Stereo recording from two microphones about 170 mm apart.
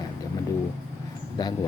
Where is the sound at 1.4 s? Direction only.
25° left (ahead or behind).